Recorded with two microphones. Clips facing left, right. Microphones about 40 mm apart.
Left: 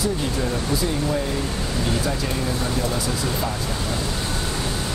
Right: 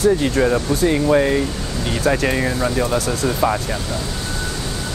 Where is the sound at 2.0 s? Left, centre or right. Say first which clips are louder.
Right 7 dB; right.